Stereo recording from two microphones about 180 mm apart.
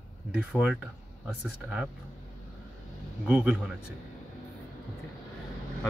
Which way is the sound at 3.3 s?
5° right (ahead or behind).